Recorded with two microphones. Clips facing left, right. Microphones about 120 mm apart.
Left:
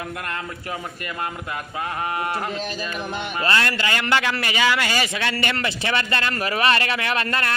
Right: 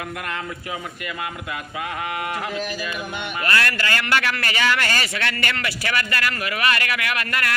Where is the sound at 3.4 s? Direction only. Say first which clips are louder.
Left 1 dB; 25° left (ahead or behind).